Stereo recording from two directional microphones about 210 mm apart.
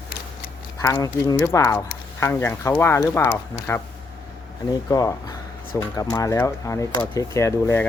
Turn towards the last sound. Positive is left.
turn(degrees=15)  # may be behind; listen again after turning